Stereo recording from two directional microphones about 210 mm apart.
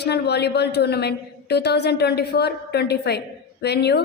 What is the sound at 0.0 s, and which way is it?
A woman's voice, 50° left (ahead or behind).